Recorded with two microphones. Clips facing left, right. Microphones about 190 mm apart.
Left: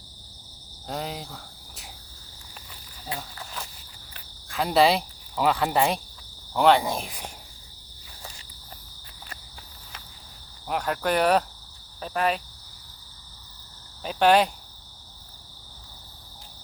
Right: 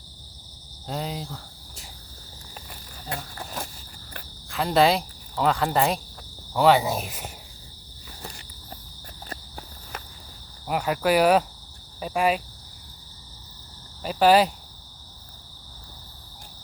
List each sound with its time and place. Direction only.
0.9 s speech: centre (ahead or behind)
3.3 s cricket: 45° right (ahead or behind)
4.4 s speech: centre (ahead or behind)
9.3 s insect: 50° right (ahead or behind)
10.7 s speech: 5° right (ahead or behind)
11.9 s cricket: 10° right (ahead or behind)
14.0 s speech: 5° right (ahead or behind)